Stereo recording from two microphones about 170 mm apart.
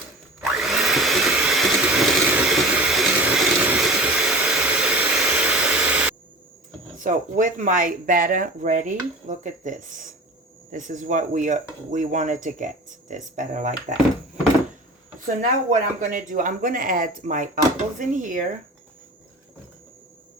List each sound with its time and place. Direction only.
0.6 s hair dryer: centre (ahead or behind)
7.0 s speech: 50° right (ahead or behind)
15.4 s speech: 50° right (ahead or behind)